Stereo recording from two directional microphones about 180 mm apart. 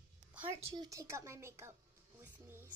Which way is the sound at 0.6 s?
20° right (ahead or behind).